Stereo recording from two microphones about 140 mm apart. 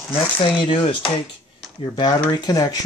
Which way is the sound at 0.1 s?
40° left (ahead or behind).